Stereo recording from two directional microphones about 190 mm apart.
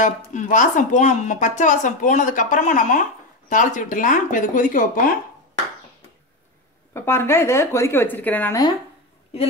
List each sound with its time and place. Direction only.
0.0 s speech: 40° left (ahead or behind)
6.9 s speech: 15° left (ahead or behind)